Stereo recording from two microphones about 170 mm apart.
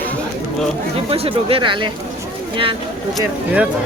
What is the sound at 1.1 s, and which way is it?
Speech, 35° right (ahead or behind).